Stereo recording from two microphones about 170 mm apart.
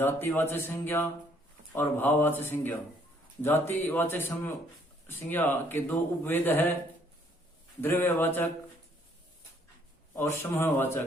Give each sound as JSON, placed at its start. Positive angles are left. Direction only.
{"t": 0.0, "sound": "speech", "side_deg": 10}
{"t": 7.8, "sound": "speech", "side_deg": 15}
{"t": 10.2, "sound": "speech", "side_deg": 15}